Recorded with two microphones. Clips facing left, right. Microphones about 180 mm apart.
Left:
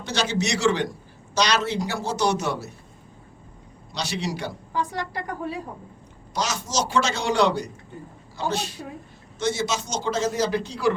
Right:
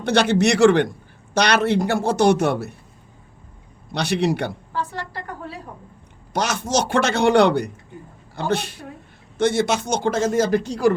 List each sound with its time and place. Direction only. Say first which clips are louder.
0.0 s a man's voice: right 8 dB; 60° right (ahead or behind)
3.9 s a man's voice: right 8 dB; 60° right (ahead or behind)
4.7 s a woman's voice: left 1 dB; 15° left (ahead or behind)
6.3 s a man's voice: right 5 dB; 60° right (ahead or behind)